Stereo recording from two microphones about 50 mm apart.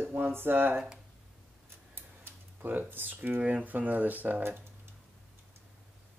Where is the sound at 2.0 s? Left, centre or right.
Right.